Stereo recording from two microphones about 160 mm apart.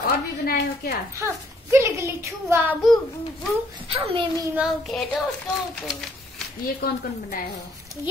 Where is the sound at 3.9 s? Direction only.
35° right (ahead or behind).